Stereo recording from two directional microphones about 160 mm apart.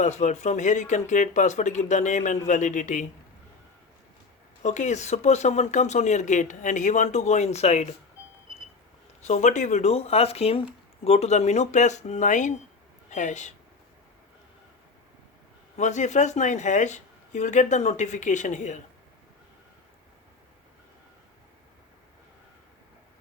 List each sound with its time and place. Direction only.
0.0 s speech: 45° left (ahead or behind)
4.6 s speech: 50° left (ahead or behind)
9.2 s speech: 50° left (ahead or behind)
15.8 s speech: 45° left (ahead or behind)